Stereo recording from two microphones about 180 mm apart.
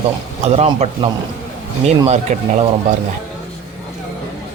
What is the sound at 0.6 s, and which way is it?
Speech, 35° right (ahead or behind).